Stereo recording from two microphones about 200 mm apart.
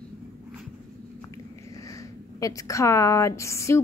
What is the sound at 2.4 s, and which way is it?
A woman's voice, 15° left (ahead or behind).